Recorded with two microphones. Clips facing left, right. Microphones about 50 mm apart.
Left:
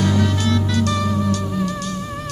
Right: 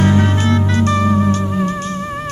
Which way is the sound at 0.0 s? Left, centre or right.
Right.